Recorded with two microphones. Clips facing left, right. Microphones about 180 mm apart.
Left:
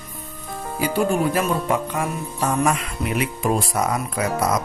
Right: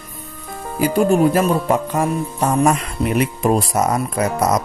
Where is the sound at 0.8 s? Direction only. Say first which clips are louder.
Right 6 dB; 45° right (ahead or behind).